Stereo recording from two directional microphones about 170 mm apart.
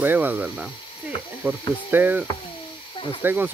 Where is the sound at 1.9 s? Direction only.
10° right (ahead or behind).